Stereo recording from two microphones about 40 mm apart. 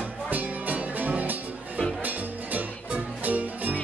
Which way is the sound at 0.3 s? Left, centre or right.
Right.